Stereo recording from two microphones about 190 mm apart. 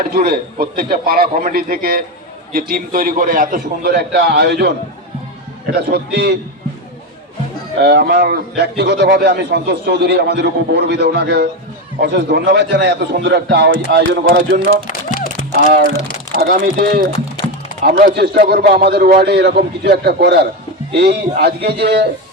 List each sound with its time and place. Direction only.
0.0 s a man's voice: 50° right (ahead or behind)
5.7 s a man's voice: 60° right (ahead or behind)
7.8 s a man's voice: 60° right (ahead or behind)
14.8 s music: 45° left (ahead or behind)
16.3 s a man's voice: 50° right (ahead or behind)